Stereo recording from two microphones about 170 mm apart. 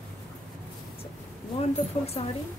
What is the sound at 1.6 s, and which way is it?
Speech, 35° left (ahead or behind).